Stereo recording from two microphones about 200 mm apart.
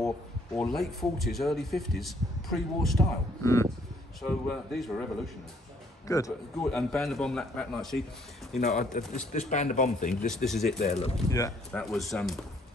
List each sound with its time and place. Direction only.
0.6 s speech: centre (ahead or behind)
4.2 s speech: centre (ahead or behind)
6.0 s speech: 15° left (ahead or behind)
6.6 s speech: centre (ahead or behind)
8.5 s speech: 35° left (ahead or behind)
10.4 s speech: centre (ahead or behind)
10.9 s speech: 30° left (ahead or behind)
11.2 s speech: 15° left (ahead or behind)
11.7 s speech: centre (ahead or behind)